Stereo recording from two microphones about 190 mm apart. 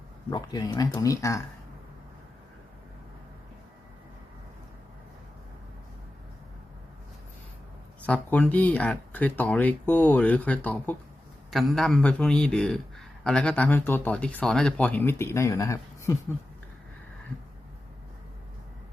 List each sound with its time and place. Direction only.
0.3 s speech: 20° left (ahead or behind)
8.0 s a man's voice: 10° left (ahead or behind)